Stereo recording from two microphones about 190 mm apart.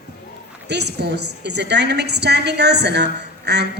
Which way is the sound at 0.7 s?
60° right (ahead or behind).